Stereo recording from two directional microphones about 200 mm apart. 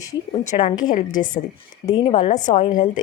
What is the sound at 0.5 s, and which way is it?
Speech, 20° left (ahead or behind).